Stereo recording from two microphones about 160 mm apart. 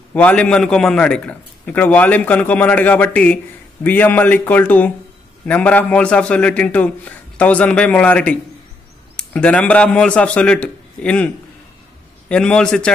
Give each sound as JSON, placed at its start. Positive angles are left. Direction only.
{"t": 0.1, "sound": "a man's voice", "side_deg": 10}
{"t": 12.3, "sound": "a man's voice", "side_deg": 5}